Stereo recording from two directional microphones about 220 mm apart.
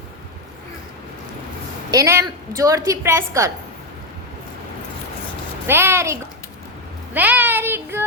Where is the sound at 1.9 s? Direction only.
15° right (ahead or behind).